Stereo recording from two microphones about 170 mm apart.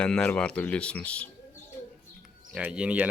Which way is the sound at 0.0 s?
5° left (ahead or behind).